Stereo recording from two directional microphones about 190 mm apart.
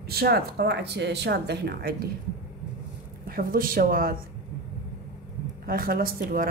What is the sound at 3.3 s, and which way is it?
Speech, 50° right (ahead or behind).